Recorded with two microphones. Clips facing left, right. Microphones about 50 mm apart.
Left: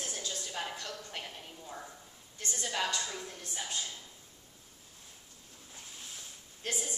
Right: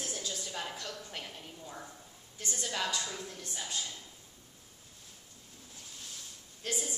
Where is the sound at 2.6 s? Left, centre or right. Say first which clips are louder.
Left 1 dB; centre.